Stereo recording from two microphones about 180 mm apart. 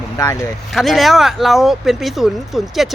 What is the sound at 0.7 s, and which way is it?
Speech, centre (ahead or behind).